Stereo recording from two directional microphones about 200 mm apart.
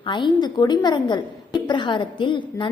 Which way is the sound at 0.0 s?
25° left (ahead or behind).